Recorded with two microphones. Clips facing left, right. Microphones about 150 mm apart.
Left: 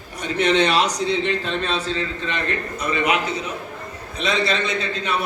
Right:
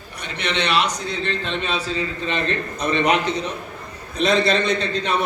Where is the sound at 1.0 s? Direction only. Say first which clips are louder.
Left 5 dB; 25° left (ahead or behind).